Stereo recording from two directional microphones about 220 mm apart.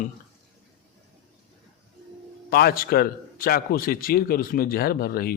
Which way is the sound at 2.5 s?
40° left (ahead or behind).